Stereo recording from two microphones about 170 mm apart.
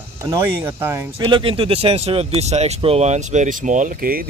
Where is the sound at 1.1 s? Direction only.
30° right (ahead or behind).